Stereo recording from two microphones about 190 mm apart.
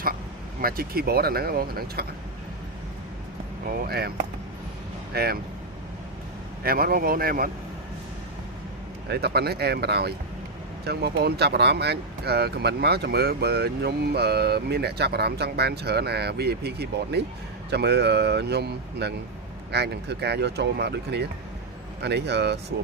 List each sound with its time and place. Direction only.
0.6 s speech: 50° right (ahead or behind)
3.8 s speech: 55° right (ahead or behind)
5.1 s speech: 55° right (ahead or behind)
6.6 s speech: 50° right (ahead or behind)
9.0 s speech: 55° right (ahead or behind)